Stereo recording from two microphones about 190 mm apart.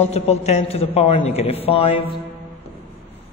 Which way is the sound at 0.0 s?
35° left (ahead or behind).